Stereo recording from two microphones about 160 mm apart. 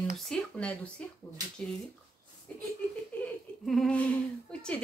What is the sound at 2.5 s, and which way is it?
Chuckle, 10° left (ahead or behind).